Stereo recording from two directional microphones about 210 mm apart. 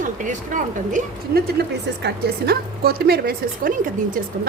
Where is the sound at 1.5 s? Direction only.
50° right (ahead or behind).